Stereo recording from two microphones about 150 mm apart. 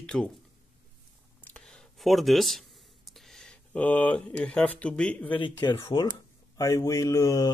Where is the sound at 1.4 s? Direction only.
5° left (ahead or behind).